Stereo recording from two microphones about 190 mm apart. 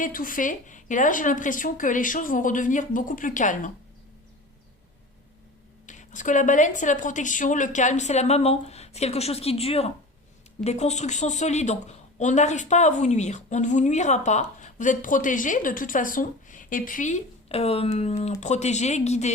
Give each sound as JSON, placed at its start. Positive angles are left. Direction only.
{"t": 0.0, "sound": "a woman's voice", "side_deg": 45}
{"t": 5.8, "sound": "a woman's voice", "side_deg": 40}